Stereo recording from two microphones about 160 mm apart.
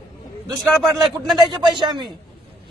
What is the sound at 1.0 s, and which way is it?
Speech, centre (ahead or behind).